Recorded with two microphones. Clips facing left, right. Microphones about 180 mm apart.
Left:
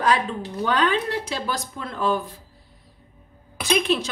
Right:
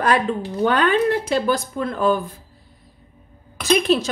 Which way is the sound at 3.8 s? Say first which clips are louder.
Right 5 dB; 40° right (ahead or behind).